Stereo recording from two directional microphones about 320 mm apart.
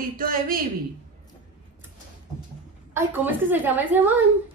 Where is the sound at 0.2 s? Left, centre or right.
Right.